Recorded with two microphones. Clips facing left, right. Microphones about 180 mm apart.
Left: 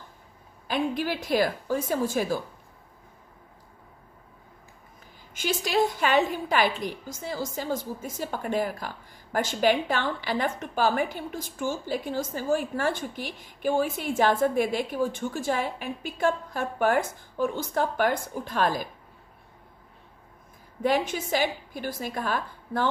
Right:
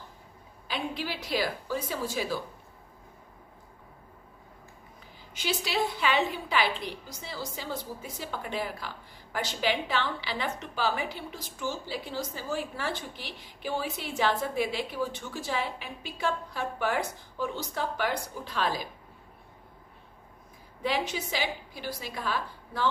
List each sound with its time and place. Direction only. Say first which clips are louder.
0.7 s a woman's voice: left 7 dB; 50° left (ahead or behind)
5.3 s a woman's voice: left 5 dB; 50° left (ahead or behind)
20.8 s a woman's voice: left 5 dB; 50° left (ahead or behind)